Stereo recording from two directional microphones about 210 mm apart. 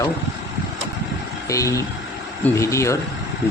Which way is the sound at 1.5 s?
15° left (ahead or behind).